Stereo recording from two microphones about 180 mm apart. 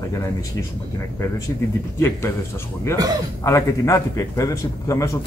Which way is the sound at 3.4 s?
15° left (ahead or behind).